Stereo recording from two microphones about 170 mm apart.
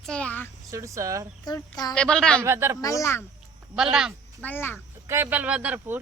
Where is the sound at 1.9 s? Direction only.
5° left (ahead or behind).